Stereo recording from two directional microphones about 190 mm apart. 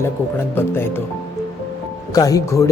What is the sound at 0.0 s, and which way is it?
Speech, 10° left (ahead or behind).